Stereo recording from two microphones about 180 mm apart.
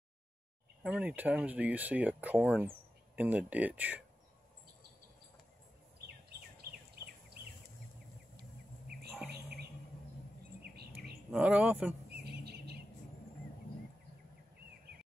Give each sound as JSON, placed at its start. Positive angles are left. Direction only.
{"t": 0.8, "sound": "speech", "side_deg": -5}
{"t": 11.3, "sound": "speech", "side_deg": -5}
{"t": 12.2, "sound": "chirp", "side_deg": -65}